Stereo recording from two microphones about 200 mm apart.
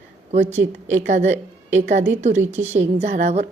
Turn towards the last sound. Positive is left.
turn(degrees=-35)  # may be behind; listen again after turning